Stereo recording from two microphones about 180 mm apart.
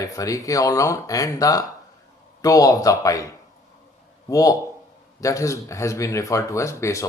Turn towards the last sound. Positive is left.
turn(degrees=15)  # may be behind; listen again after turning